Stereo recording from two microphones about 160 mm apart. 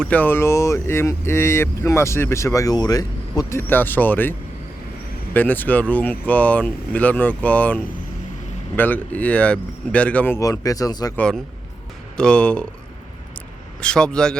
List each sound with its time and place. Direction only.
0.0 s speech: 10° left (ahead or behind)
11.2 s speech: 5° left (ahead or behind)
13.8 s speech: 5° left (ahead or behind)